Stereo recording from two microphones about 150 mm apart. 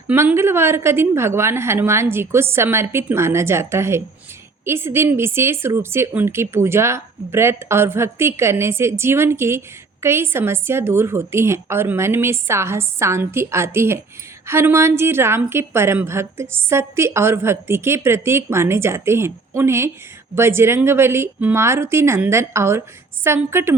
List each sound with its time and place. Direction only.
0.1 s speech: 15° right (ahead or behind)